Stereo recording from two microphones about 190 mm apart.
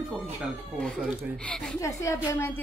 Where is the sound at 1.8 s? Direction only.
15° left (ahead or behind).